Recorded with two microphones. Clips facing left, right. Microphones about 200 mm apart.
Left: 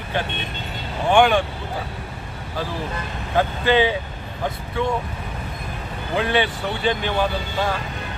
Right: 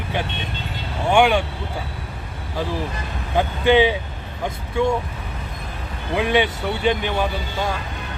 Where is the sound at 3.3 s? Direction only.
15° right (ahead or behind).